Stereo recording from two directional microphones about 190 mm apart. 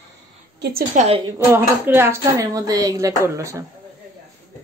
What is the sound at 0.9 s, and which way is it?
Speech, 35° right (ahead or behind).